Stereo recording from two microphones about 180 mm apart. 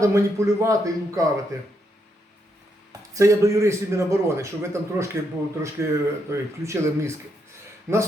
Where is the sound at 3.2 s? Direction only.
15° right (ahead or behind).